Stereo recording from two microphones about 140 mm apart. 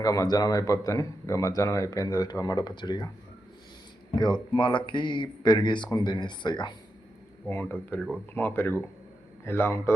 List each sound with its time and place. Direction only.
0.0 s speech: 25° left (ahead or behind)
4.1 s speech: 30° left (ahead or behind)
7.4 s speech: 15° left (ahead or behind)